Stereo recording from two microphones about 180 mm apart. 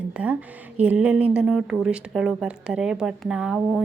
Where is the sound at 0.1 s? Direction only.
10° right (ahead or behind).